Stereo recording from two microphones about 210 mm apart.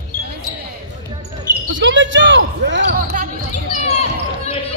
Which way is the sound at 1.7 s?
60° right (ahead or behind).